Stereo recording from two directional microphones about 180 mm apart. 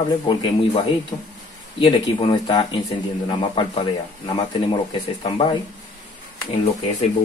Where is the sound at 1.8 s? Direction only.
30° left (ahead or behind).